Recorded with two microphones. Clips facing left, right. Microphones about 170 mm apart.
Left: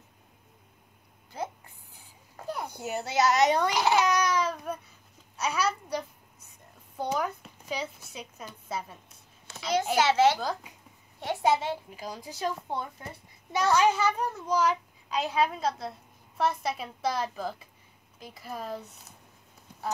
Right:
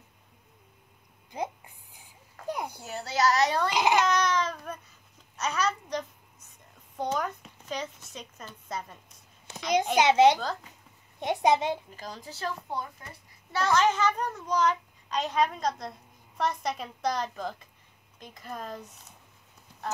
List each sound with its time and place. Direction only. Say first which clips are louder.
1.3 s a sound: right 2 dB; 15° right (ahead or behind)
3.0 s speech: left 1 dB; 20° left (ahead or behind)
3.7 s a child's voice: even; 15° right (ahead or behind)
4.0 s babbling: even; 10° left (ahead or behind)
5.4 s a child's voice: even; 10° left (ahead or behind)
9.9 s a child's voice: right 3 dB; 15° right (ahead or behind)
10.4 s a child's voice: left 1 dB; 10° left (ahead or behind)
11.1 s a child's voice: right 2 dB; 20° right (ahead or behind)
11.9 s a child's voice: left 2 dB; 10° left (ahead or behind)